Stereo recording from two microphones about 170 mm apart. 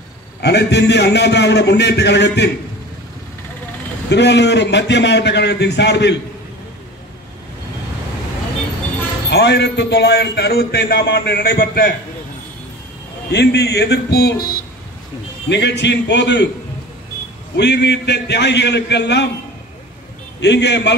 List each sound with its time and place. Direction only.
0.4 s a man's voice: 80° left
4.1 s a man's voice: 90° left
9.3 s a man's voice: 80° left
13.3 s a man's voice: 80° left
15.4 s a man's voice: 90° left
17.6 s a man's voice: 80° left
20.3 s a man's voice: 90° left